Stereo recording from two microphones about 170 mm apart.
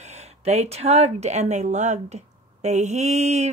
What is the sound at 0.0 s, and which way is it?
Speech, 40° right (ahead or behind).